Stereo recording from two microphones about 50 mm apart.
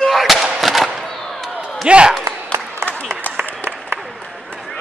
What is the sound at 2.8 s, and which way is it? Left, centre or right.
Applause, right.